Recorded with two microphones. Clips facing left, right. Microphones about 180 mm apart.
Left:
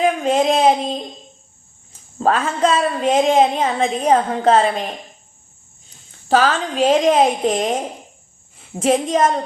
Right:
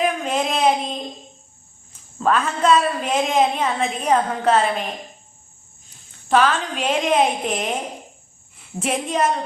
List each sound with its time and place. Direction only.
0.3 s child singing: 30° left (ahead or behind)
2.1 s a woman's voice: 30° left (ahead or behind)
6.2 s a woman's voice: 30° left (ahead or behind)